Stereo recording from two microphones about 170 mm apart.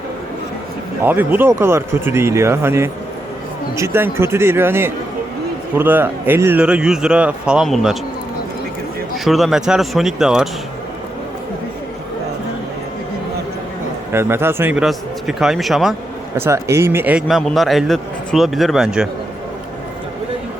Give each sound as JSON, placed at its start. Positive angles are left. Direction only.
{"t": 1.0, "sound": "speech", "side_deg": -10}
{"t": 9.1, "sound": "a man's voice", "side_deg": 0}
{"t": 14.1, "sound": "a man's voice", "side_deg": -15}
{"t": 16.4, "sound": "a man's voice", "side_deg": -15}